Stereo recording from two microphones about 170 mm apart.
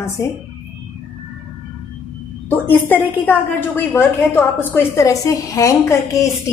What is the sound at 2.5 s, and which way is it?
A woman's voice, 10° left (ahead or behind).